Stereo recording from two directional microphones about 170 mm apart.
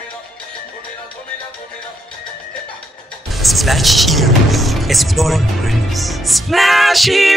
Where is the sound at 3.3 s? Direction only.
Centre (ahead or behind).